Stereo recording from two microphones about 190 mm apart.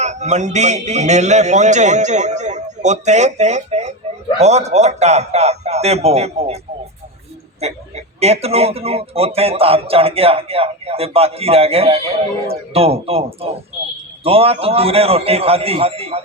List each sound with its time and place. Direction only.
0.0 s speech: 40° right (ahead or behind)
7.6 s speech: 35° right (ahead or behind)